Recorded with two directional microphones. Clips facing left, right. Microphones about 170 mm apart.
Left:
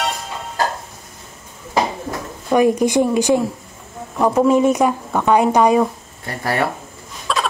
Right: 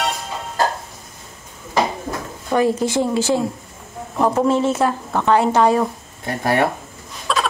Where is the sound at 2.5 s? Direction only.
15° left (ahead or behind).